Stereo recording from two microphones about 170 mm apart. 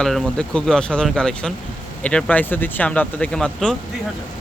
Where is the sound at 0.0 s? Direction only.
Centre (ahead or behind).